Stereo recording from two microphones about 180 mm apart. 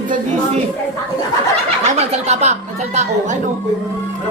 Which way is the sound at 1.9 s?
35° right (ahead or behind).